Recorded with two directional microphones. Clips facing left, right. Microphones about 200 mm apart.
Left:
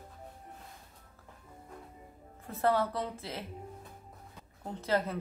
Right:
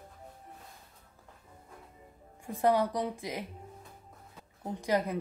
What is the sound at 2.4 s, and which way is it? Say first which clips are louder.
A woman's voice: right 2 dB; 15° right (ahead or behind).